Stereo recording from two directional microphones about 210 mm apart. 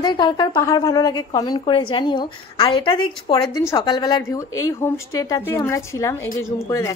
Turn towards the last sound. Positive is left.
turn(degrees=15)  # may be behind; listen again after turning